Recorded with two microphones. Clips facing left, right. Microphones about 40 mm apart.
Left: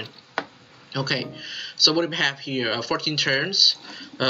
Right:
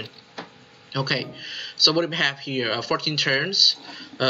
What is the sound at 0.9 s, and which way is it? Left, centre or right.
Speech, centre.